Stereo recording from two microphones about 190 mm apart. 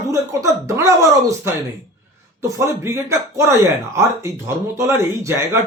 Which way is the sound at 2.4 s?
15° right (ahead or behind).